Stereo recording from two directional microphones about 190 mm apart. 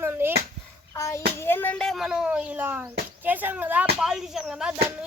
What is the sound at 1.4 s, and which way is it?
A child's voice, 10° left (ahead or behind).